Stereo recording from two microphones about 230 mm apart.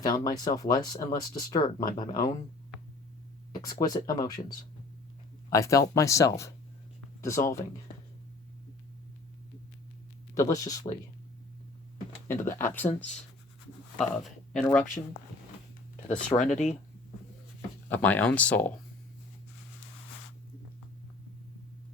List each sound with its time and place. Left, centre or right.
0.0 s speech: centre
3.5 s speech: centre
10.3 s speech: centre
12.4 s speech: centre
12.9 s speech: left
14.0 s speech: centre
16.4 s speech: left
17.8 s speech: centre